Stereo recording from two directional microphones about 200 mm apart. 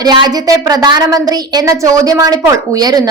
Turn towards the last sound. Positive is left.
turn(degrees=-20)  # may be behind; listen again after turning